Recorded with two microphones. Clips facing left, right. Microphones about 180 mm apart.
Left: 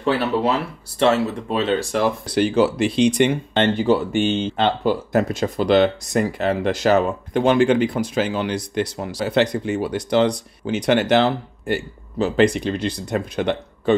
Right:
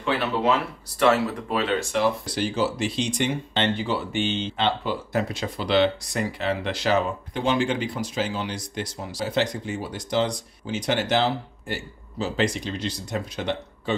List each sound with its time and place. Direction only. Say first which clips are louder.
0.0 s speech: left 4 dB; 35° left (ahead or behind)
2.2 s speech: left 7 dB; 60° left (ahead or behind)